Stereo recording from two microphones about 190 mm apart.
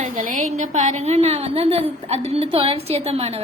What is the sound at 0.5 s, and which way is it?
A woman's voice, 40° right (ahead or behind).